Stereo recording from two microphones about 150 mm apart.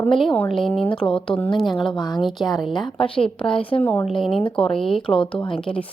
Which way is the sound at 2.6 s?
Centre (ahead or behind).